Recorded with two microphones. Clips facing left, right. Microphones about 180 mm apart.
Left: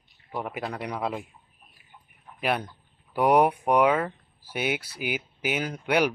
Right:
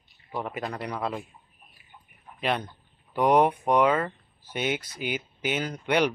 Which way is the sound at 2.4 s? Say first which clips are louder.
Left 1 dB; 10° left (ahead or behind).